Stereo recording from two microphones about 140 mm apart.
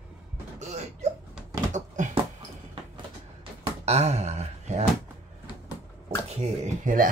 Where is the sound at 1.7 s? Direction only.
60° right (ahead or behind).